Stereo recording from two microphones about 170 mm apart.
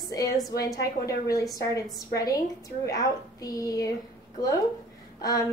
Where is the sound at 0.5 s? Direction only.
20° left (ahead or behind).